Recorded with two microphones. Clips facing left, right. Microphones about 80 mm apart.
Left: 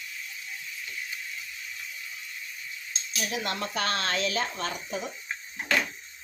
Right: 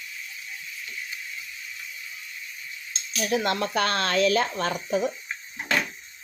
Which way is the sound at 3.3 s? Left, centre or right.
Right.